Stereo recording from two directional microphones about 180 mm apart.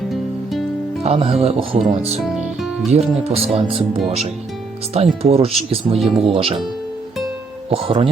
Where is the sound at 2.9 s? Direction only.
35° right (ahead or behind).